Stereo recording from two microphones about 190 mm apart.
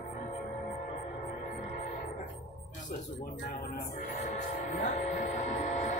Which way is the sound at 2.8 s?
45° left (ahead or behind).